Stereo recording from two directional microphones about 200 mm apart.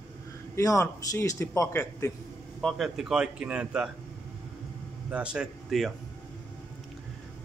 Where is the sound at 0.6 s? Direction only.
15° left (ahead or behind).